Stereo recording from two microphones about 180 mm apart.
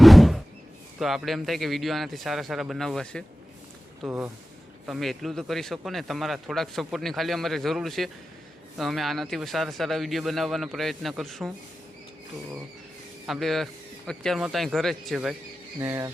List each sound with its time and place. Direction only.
0.0 s a sound: centre (ahead or behind)
0.9 s speech: centre (ahead or behind)
4.0 s speech: 10° right (ahead or behind)
4.9 s speech: centre (ahead or behind)
13.2 s speech: centre (ahead or behind)
15.8 s speech: 15° right (ahead or behind)